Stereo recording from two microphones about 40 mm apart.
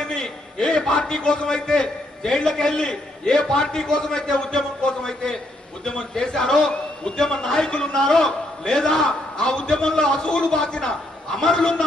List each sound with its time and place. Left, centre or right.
0.1 s a man's voice: left